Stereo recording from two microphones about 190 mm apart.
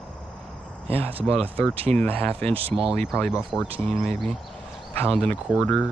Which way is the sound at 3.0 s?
Centre (ahead or behind).